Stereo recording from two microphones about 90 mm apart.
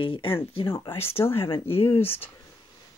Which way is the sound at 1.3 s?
75° left (ahead or behind).